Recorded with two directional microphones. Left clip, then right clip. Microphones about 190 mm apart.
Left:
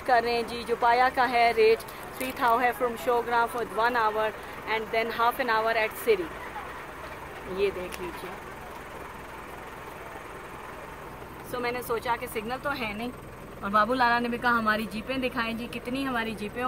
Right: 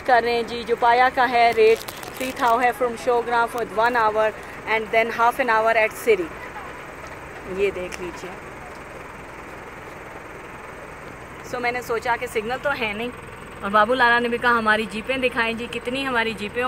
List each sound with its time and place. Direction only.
0.0 s speech: 5° right (ahead or behind)
11.5 s speech: 10° right (ahead or behind)